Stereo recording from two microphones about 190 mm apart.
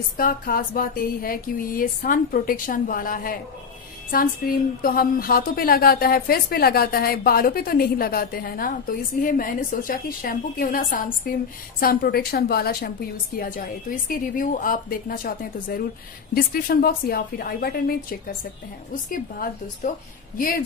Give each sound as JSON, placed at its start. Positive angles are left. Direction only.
{"t": 0.2, "sound": "a woman's voice", "side_deg": 50}
{"t": 19.0, "sound": "speech", "side_deg": 45}